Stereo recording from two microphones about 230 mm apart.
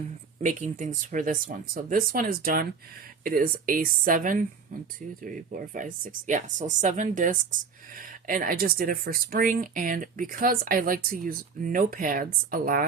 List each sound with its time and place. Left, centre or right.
0.4 s speech: right